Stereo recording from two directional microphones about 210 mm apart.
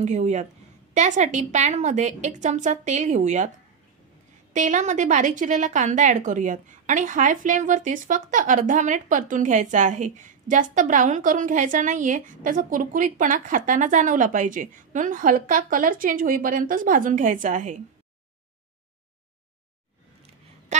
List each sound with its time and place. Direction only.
0.0 s a woman's voice: 35° right (ahead or behind)
4.6 s a woman's voice: 35° right (ahead or behind)